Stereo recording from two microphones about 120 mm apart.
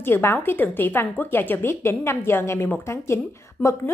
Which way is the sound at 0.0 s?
20° left (ahead or behind).